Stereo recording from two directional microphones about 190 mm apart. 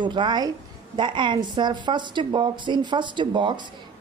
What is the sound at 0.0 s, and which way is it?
Speech, 25° right (ahead or behind).